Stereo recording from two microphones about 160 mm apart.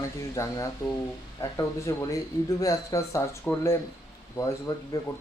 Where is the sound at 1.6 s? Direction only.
20° left (ahead or behind).